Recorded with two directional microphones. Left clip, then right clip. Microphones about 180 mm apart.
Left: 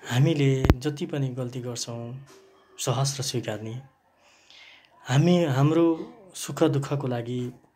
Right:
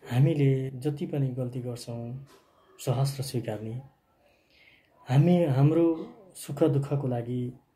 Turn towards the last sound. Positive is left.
turn(degrees=0)  # may be behind; listen again after turning